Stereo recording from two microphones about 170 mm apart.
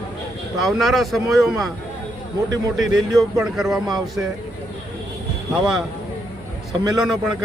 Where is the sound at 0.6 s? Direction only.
Centre (ahead or behind).